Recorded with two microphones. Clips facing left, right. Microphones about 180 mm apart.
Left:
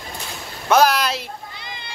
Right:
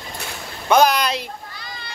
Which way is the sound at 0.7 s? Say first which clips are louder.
Even; 5° left (ahead or behind).